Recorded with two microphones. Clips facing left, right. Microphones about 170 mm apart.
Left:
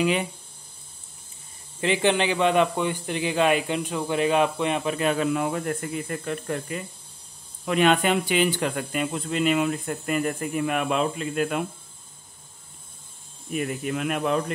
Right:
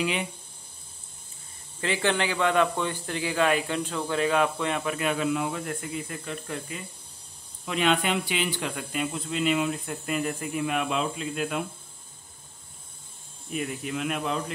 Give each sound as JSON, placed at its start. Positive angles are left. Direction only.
{"t": 1.8, "sound": "speech", "side_deg": 20}
{"t": 4.9, "sound": "speech", "side_deg": 40}
{"t": 13.5, "sound": "speech", "side_deg": 50}